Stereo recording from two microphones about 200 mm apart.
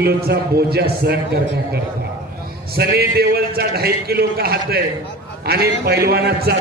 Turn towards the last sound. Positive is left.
turn(degrees=-50)  # may be behind; listen again after turning